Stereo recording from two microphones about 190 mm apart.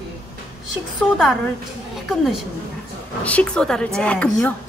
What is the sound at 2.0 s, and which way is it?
A woman's voice, centre (ahead or behind).